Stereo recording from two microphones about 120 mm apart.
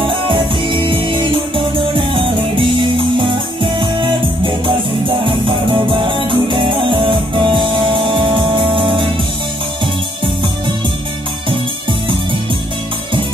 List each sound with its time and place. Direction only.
0.3 s music: 40° right (ahead or behind)
4.6 s music: 45° right (ahead or behind)